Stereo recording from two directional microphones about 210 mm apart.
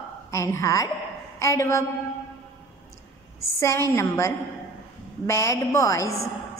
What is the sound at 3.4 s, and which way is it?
A woman's voice, 15° left (ahead or behind).